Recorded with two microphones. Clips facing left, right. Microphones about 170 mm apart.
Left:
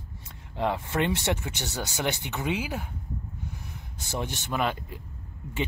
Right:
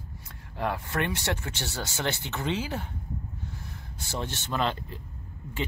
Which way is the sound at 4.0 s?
15° left (ahead or behind).